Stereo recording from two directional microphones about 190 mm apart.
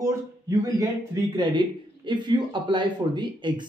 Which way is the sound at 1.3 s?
25° right (ahead or behind).